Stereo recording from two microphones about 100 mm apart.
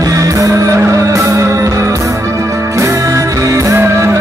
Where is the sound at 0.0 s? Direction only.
35° right (ahead or behind).